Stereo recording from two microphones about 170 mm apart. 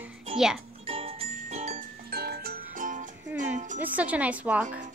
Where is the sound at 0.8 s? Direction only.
35° right (ahead or behind).